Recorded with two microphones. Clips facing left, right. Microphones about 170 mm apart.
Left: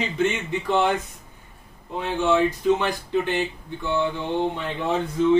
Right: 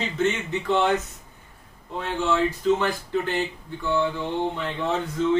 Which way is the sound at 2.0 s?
15° left (ahead or behind).